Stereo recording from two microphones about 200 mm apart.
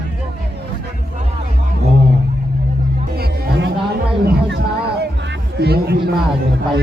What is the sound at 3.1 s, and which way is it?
Music, 55° right (ahead or behind).